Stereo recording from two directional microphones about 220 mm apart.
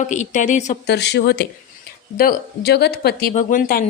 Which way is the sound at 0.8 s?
50° left (ahead or behind).